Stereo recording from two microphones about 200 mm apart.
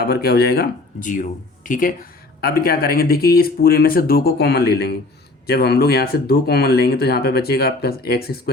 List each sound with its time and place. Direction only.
0.0 s speech: 50° left (ahead or behind)